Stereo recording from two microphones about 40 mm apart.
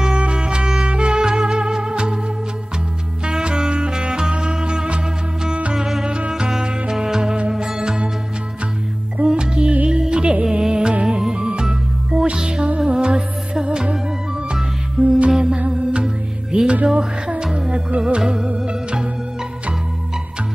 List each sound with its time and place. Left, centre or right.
0.2 s music: right
3.3 s music: right
9.2 s music: right